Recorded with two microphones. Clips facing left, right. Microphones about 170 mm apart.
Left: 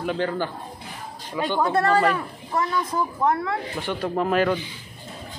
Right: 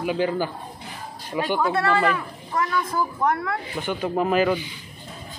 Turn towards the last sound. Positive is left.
turn(degrees=-5)  # may be behind; listen again after turning